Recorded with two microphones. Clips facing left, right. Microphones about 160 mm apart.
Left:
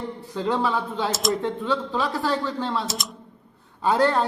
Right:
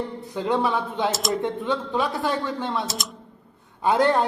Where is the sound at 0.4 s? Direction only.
20° right (ahead or behind).